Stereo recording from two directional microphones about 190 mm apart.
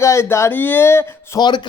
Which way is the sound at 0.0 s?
15° left (ahead or behind).